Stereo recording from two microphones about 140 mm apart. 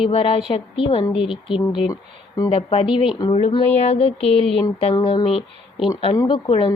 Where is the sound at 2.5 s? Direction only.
40° left (ahead or behind).